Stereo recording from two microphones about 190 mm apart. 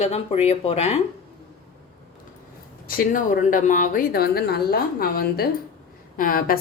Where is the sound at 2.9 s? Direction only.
45° left (ahead or behind).